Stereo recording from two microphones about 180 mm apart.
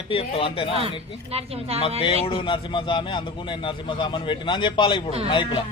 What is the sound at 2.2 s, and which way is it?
A man's voice, 30° left (ahead or behind).